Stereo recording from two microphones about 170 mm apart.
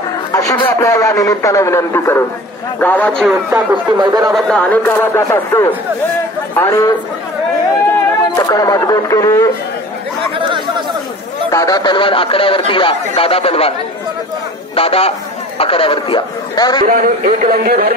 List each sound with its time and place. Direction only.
0.3 s a man's voice: 20° left (ahead or behind); by 3.6 s 5° left (ahead or behind)
4.0 s speech: 25° right (ahead or behind)
4.3 s a man's voice: 5° left (ahead or behind)
8.4 s a man's voice: 20° left (ahead or behind)
11.5 s a man's voice: 20° left (ahead or behind)
14.8 s a man's voice: 35° left (ahead or behind)
16.8 s a man's voice: 55° right (ahead or behind)